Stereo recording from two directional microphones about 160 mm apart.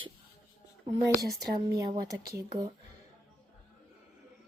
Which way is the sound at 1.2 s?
20° right (ahead or behind).